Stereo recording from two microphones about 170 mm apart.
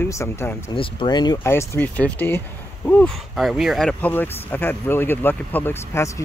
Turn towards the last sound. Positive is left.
turn(degrees=15)  # may be behind; listen again after turning